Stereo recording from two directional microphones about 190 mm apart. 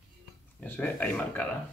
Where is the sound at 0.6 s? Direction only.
10° left (ahead or behind).